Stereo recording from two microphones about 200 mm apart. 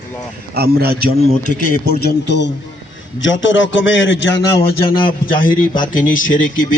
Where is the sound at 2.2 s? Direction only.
60° left (ahead or behind).